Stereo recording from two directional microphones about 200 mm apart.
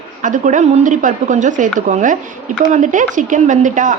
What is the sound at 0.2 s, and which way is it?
A woman's voice, 40° right (ahead or behind).